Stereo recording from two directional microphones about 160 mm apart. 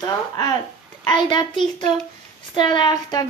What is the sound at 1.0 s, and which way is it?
Speech, 30° left (ahead or behind).